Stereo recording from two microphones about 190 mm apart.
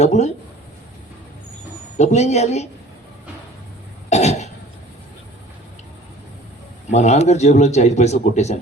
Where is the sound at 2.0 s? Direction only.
35° left (ahead or behind).